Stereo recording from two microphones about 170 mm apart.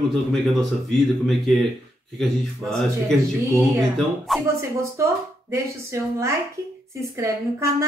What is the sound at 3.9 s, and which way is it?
Speech, centre (ahead or behind).